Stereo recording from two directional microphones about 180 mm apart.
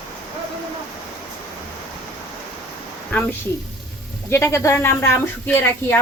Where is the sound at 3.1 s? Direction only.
10° left (ahead or behind).